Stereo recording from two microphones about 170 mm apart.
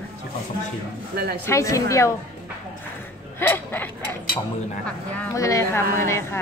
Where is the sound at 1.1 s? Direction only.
70° right (ahead or behind).